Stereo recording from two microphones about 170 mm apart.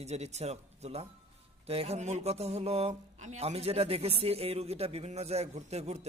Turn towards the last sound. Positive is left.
turn(degrees=-40)  # may be behind; listen again after turning